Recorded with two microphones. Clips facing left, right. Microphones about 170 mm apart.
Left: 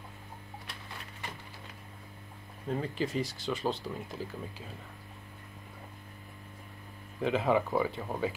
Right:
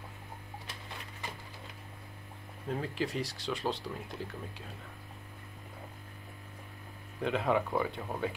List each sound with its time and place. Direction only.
2.7 s speech: centre (ahead or behind)
7.2 s speech: centre (ahead or behind)